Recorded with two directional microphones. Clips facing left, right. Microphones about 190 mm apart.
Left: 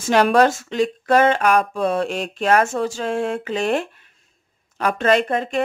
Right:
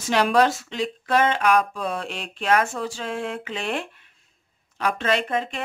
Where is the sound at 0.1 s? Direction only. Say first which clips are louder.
Left 4 dB; 50° left (ahead or behind).